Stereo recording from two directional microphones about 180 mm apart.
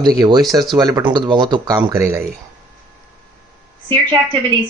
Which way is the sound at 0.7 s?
20° right (ahead or behind).